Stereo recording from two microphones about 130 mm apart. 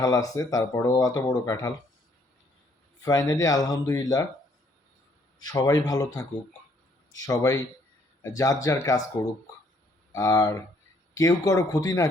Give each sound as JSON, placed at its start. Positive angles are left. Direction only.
{"t": 0.0, "sound": "speech", "side_deg": 25}
{"t": 3.0, "sound": "speech", "side_deg": 30}
{"t": 5.4, "sound": "speech", "side_deg": 30}
{"t": 7.2, "sound": "speech", "side_deg": 25}
{"t": 10.1, "sound": "speech", "side_deg": 25}